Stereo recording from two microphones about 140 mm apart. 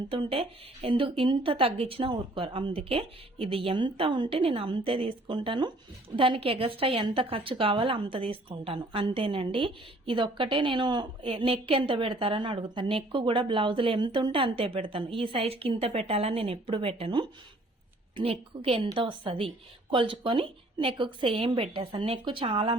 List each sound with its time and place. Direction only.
0.1 s a woman's voice: 40° right (ahead or behind)